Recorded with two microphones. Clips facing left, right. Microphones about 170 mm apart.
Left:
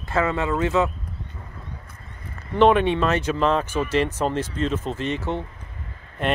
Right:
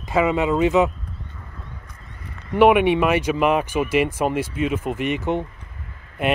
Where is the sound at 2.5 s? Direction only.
10° right (ahead or behind).